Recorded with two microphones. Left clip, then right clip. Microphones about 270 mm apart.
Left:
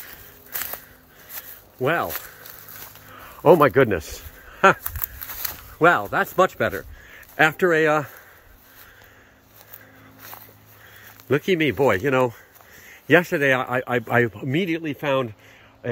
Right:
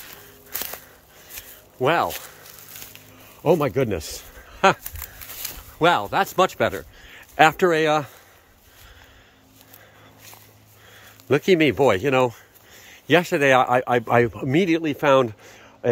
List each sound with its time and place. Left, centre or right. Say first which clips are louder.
1.8 s speech: right 2 dB; centre
3.3 s speech: left 5 dB; centre
4.0 s a sound: right 2 dB; centre
5.3 s speech: left 1 dB; centre
11.2 s speech: right 3 dB; centre